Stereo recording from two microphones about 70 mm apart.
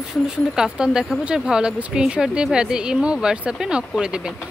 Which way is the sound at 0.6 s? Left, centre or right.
Centre.